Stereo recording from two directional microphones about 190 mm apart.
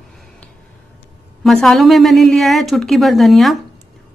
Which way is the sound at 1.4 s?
Centre (ahead or behind).